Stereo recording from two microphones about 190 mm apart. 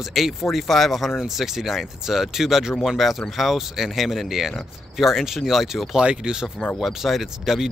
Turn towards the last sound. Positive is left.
turn(degrees=0)  # may be behind; listen again after turning